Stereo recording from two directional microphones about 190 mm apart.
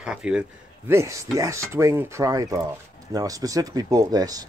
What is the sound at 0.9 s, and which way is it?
Speech, 15° right (ahead or behind).